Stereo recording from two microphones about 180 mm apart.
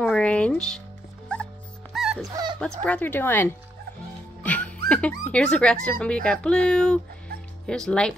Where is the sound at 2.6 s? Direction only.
5° left (ahead or behind).